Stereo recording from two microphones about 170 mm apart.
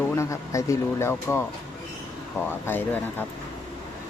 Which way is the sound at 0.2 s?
20° left (ahead or behind).